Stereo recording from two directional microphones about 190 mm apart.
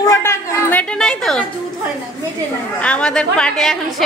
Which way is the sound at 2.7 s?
5° left (ahead or behind).